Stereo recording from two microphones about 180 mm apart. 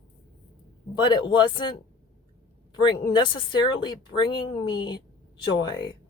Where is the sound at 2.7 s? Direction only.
25° left (ahead or behind).